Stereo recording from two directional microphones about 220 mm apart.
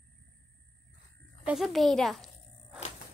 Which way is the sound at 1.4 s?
Centre (ahead or behind).